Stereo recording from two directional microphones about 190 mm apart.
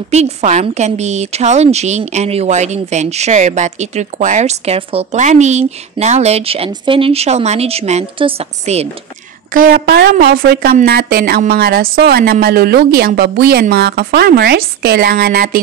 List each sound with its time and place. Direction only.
0.1 s a woman's voice: 35° right (ahead or behind)
9.5 s a woman's voice: 50° right (ahead or behind)